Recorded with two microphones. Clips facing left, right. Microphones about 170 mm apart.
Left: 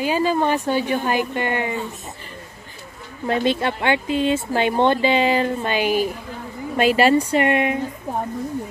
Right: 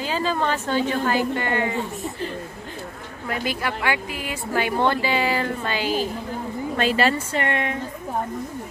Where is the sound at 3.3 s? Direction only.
25° left (ahead or behind).